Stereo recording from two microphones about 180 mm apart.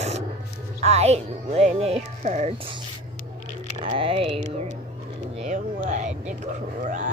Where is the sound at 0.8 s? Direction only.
35° right (ahead or behind).